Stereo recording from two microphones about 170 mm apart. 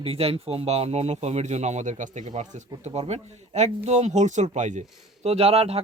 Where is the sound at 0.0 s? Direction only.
35° right (ahead or behind).